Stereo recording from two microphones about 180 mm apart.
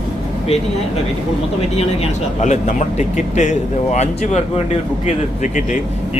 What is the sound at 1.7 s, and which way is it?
Speech, 35° left (ahead or behind).